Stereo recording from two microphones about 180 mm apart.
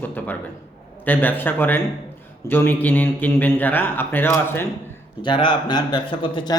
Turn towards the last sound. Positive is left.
turn(degrees=25)  # may be behind; listen again after turning